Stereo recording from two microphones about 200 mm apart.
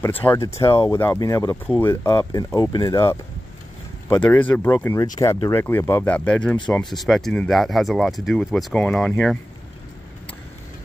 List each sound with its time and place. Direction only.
0.0 s speech: 10° left (ahead or behind)
4.2 s speech: 10° left (ahead or behind)